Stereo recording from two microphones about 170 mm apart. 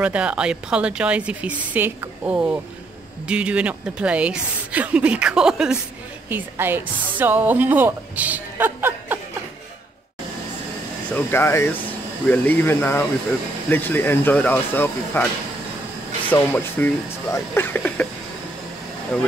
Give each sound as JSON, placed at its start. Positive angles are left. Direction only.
{"t": 0.0, "sound": "a woman's voice", "side_deg": -5}
{"t": 11.1, "sound": "speech", "side_deg": 10}
{"t": 16.3, "sound": "speech", "side_deg": 10}